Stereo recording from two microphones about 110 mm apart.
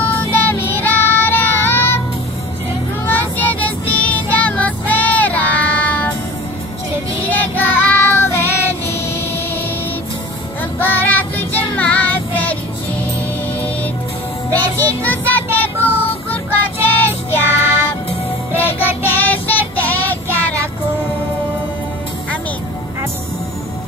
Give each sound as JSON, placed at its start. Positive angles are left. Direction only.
{"t": 0.3, "sound": "child singing", "side_deg": 20}
{"t": 3.1, "sound": "music", "side_deg": 15}
{"t": 7.2, "sound": "child singing", "side_deg": 20}
{"t": 10.8, "sound": "child singing", "side_deg": 15}
{"t": 14.5, "sound": "music", "side_deg": 15}
{"t": 16.8, "sound": "child singing", "side_deg": 20}